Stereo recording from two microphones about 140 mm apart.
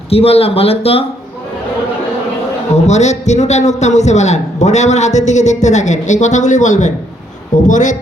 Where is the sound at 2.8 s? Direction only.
55° left (ahead or behind).